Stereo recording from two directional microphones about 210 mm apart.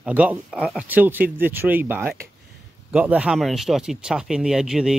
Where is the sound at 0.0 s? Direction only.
5° right (ahead or behind).